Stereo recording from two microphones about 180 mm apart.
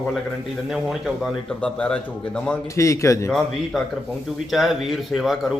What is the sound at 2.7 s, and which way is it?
Speech, 15° left (ahead or behind).